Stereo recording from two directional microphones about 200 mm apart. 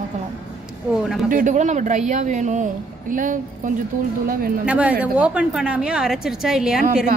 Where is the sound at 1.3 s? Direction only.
40° right (ahead or behind).